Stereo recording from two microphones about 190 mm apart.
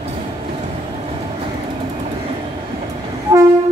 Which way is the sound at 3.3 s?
20° right (ahead or behind).